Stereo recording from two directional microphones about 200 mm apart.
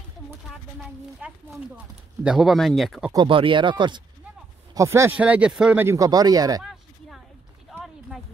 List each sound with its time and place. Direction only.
0.5 s a woman's voice: centre (ahead or behind)
3.1 s speech: 25° right (ahead or behind)
6.6 s a sound: centre (ahead or behind)